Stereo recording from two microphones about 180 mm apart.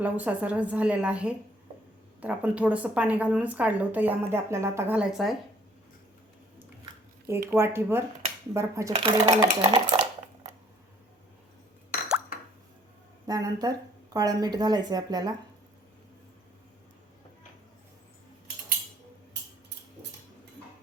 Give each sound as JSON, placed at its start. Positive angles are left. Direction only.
{"t": 0.0, "sound": "a woman's voice", "side_deg": -10}
{"t": 7.5, "sound": "a woman's voice", "side_deg": -15}
{"t": 9.3, "sound": "dishes", "side_deg": -30}
{"t": 13.2, "sound": "a woman's voice", "side_deg": -20}